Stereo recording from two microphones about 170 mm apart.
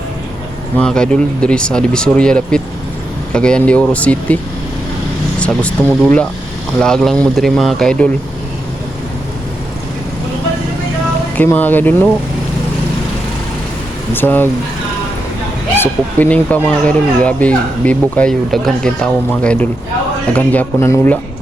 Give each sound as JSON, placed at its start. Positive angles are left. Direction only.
{"t": 0.8, "sound": "speech", "side_deg": 5}
{"t": 5.4, "sound": "speech", "side_deg": 5}
{"t": 11.3, "sound": "speech", "side_deg": 10}
{"t": 14.1, "sound": "speech", "side_deg": 10}
{"t": 15.7, "sound": "speech", "side_deg": 10}